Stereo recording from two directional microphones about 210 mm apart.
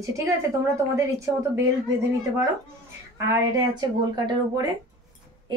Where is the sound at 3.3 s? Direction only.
20° right (ahead or behind).